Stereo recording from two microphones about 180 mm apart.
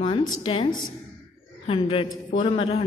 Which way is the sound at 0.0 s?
30° left (ahead or behind).